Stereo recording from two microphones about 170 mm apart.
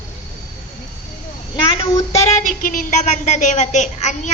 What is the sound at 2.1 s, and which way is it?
A woman's voice, 45° left (ahead or behind).